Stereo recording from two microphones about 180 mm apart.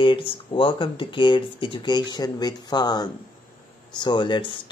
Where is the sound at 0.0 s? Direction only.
25° left (ahead or behind).